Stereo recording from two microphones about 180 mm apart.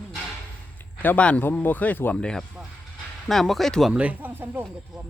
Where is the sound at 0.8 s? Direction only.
10° left (ahead or behind); by 4.6 s 10° right (ahead or behind).